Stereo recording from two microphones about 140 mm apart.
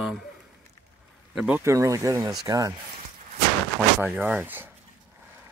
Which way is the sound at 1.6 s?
25° right (ahead or behind).